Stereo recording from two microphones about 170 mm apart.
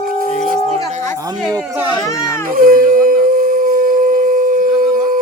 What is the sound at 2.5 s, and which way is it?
Howl, 55° right (ahead or behind).